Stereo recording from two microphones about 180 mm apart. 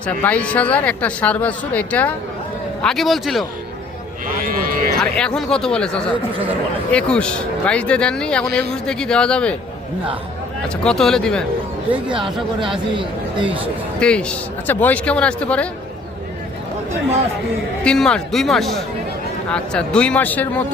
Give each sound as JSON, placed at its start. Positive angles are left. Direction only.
{"t": 0.2, "sound": "speech", "side_deg": 10}
{"t": 4.4, "sound": "a sound", "side_deg": -50}
{"t": 5.1, "sound": "speech", "side_deg": 5}
{"t": 10.8, "sound": "speech", "side_deg": 0}
{"t": 12.1, "sound": "speech", "side_deg": -25}
{"t": 14.0, "sound": "speech", "side_deg": 5}
{"t": 17.8, "sound": "speech", "side_deg": 5}